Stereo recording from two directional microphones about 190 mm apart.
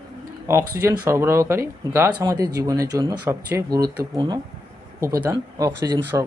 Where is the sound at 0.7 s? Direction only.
15° right (ahead or behind).